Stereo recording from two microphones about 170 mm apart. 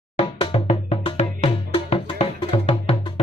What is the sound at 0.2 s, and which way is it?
Music, 30° left (ahead or behind).